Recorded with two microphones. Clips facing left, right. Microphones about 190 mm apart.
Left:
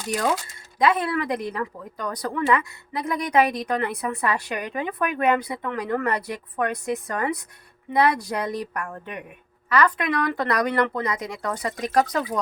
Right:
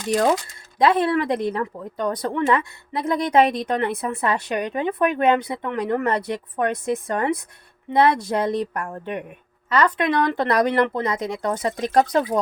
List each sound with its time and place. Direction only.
0.8 s a woman's voice: 30° right (ahead or behind)